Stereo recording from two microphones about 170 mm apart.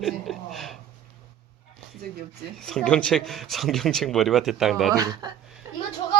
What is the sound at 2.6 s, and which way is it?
Speech, 5° left (ahead or behind).